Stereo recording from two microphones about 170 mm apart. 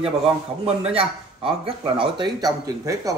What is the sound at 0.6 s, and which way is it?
A man's voice, 35° right (ahead or behind).